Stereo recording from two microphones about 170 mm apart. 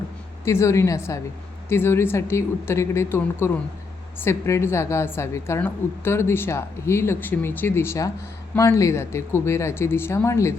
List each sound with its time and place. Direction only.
0.4 s a woman's voice: 15° left (ahead or behind)